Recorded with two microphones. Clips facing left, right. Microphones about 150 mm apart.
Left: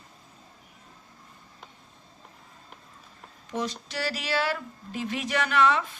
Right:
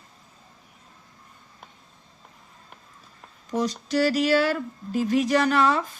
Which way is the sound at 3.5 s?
40° right (ahead or behind).